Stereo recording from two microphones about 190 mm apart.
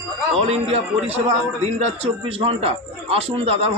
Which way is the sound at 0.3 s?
35° right (ahead or behind).